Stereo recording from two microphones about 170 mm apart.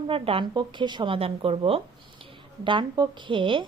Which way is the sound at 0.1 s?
30° right (ahead or behind).